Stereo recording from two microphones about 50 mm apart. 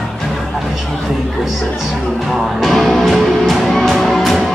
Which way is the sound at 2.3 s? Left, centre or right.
Centre.